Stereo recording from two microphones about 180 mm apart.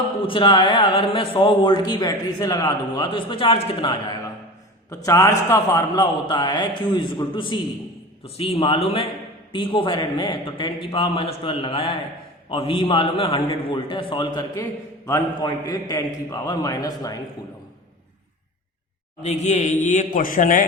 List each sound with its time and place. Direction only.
0.2 s a man's voice: 25° left (ahead or behind)
5.0 s a man's voice: 15° left (ahead or behind)
19.2 s a man's voice: 40° left (ahead or behind)